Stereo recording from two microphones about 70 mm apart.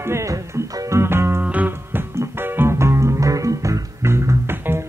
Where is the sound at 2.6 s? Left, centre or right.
Right.